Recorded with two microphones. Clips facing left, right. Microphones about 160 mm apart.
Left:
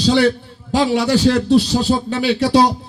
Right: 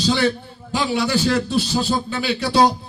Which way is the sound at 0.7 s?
75° left (ahead or behind).